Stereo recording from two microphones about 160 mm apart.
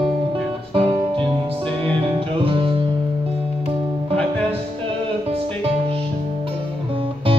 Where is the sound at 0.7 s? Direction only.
35° right (ahead or behind).